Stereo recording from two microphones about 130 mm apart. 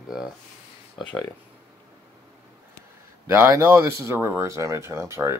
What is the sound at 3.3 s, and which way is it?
Speech, 20° right (ahead or behind).